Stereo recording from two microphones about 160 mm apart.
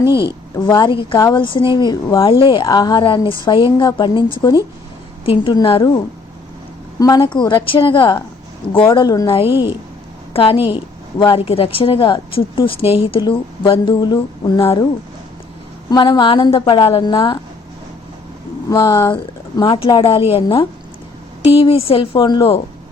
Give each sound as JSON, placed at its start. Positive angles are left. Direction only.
{"t": 0.7, "sound": "a woman's voice", "side_deg": 30}
{"t": 7.0, "sound": "a woman's voice", "side_deg": 25}
{"t": 15.9, "sound": "a woman's voice", "side_deg": 30}
{"t": 18.7, "sound": "a woman's voice", "side_deg": 20}